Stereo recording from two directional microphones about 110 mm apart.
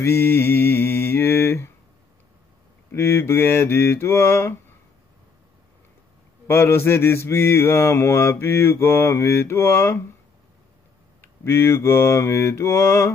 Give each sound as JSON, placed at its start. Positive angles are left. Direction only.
{"t": 0.0, "sound": "mantra", "side_deg": 20}
{"t": 2.9, "sound": "mantra", "side_deg": 25}
{"t": 6.4, "sound": "mantra", "side_deg": 20}
{"t": 11.1, "sound": "mantra", "side_deg": 25}